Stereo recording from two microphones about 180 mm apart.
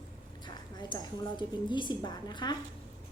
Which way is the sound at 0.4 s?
25° left (ahead or behind).